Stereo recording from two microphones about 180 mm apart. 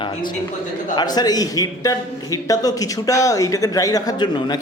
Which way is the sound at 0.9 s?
20° left (ahead or behind).